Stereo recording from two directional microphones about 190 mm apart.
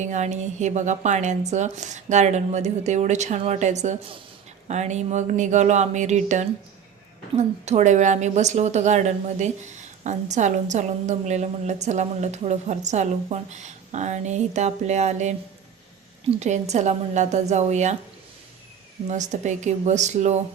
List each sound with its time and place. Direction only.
0.0 s a woman's voice: 40° right (ahead or behind)
16.4 s a woman's voice: 35° right (ahead or behind)
19.0 s a woman's voice: 40° right (ahead or behind)